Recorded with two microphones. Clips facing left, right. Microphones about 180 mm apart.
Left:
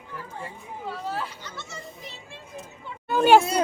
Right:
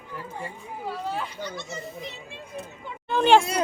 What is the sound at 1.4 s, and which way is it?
Speech, 15° right (ahead or behind).